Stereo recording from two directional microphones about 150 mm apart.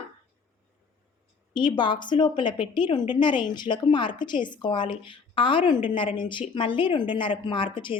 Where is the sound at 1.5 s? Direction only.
30° left (ahead or behind).